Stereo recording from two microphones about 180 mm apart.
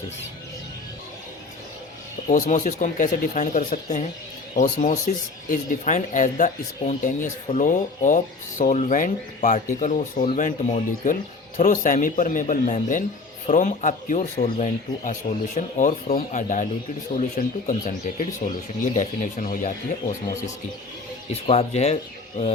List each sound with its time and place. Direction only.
2.2 s speech: 45° left (ahead or behind)
16.0 s speech: 50° left (ahead or behind)
21.4 s speech: 30° left (ahead or behind)